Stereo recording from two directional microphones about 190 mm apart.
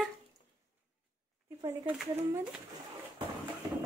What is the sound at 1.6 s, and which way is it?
Speech, 20° right (ahead or behind).